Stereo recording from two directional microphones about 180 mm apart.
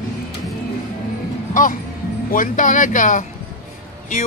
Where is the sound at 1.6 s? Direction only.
45° left (ahead or behind).